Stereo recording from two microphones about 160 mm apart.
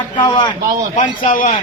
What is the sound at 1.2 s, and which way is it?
Speech, 55° left (ahead or behind).